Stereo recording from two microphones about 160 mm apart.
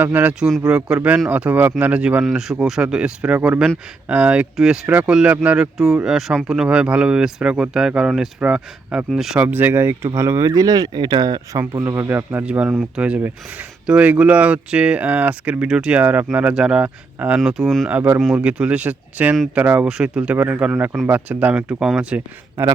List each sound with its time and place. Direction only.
0.0 s speech: 10° right (ahead or behind)
17.9 s speech: 10° right (ahead or behind)
22.6 s speech: 15° right (ahead or behind)